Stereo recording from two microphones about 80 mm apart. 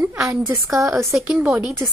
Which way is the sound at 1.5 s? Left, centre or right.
Centre.